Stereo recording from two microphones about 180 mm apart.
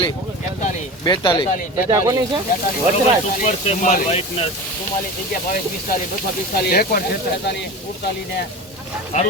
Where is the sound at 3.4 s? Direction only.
40° left (ahead or behind).